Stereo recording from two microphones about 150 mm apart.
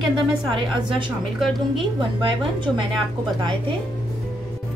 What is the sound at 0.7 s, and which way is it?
Speech, 30° right (ahead or behind).